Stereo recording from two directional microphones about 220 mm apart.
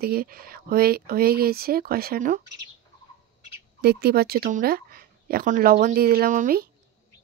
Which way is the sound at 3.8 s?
45° right (ahead or behind).